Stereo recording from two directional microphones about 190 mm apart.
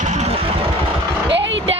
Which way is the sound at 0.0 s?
40° right (ahead or behind).